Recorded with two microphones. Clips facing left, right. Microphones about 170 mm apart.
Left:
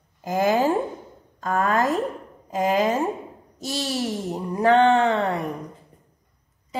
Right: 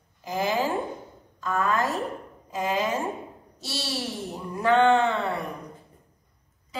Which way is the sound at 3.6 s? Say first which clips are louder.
Left 6 dB; 40° left (ahead or behind).